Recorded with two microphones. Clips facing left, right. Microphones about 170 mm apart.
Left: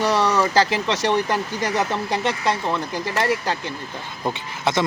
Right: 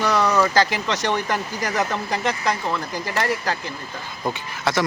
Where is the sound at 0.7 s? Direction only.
25° left (ahead or behind).